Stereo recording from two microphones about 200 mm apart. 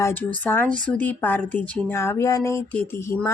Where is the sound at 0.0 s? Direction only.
10° left (ahead or behind).